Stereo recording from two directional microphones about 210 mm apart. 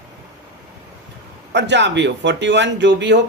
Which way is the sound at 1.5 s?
55° right (ahead or behind).